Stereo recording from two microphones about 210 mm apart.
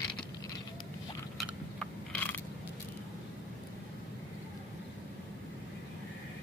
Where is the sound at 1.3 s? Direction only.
5° left (ahead or behind).